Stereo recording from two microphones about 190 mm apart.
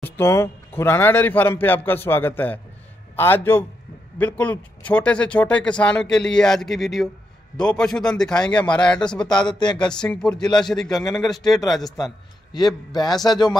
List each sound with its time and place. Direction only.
0.0 s speech: 15° left (ahead or behind)
9.4 s speech: 25° left (ahead or behind)
9.8 s speech: 5° left (ahead or behind)
12.5 s speech: 20° left (ahead or behind)